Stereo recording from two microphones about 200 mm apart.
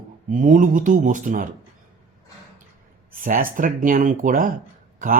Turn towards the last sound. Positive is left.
turn(degrees=-40)  # may be behind; listen again after turning